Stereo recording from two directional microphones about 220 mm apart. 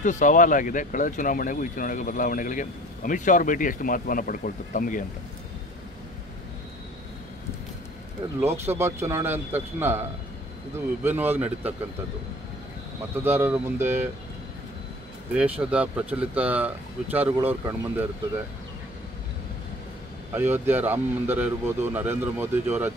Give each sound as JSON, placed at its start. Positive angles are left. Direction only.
{"t": 0.0, "sound": "speech", "side_deg": 35}
{"t": 8.4, "sound": "speech", "side_deg": -10}
{"t": 11.1, "sound": "speech", "side_deg": -10}
{"t": 13.1, "sound": "speech", "side_deg": -10}
{"t": 15.3, "sound": "speech", "side_deg": -5}
{"t": 20.3, "sound": "speech", "side_deg": -10}